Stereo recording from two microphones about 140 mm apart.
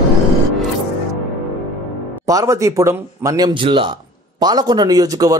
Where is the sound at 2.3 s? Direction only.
25° right (ahead or behind).